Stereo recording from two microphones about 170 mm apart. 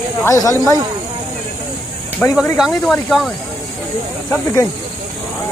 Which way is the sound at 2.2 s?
10° left (ahead or behind).